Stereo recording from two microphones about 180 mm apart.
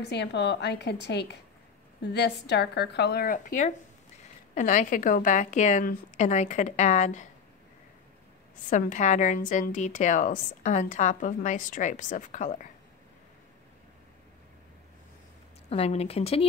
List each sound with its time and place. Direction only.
0.1 s a woman's voice: 70° left (ahead or behind); by 7.2 s 40° left (ahead or behind)
8.6 s a woman's voice: 45° left (ahead or behind)
15.7 s speech: 35° left (ahead or behind)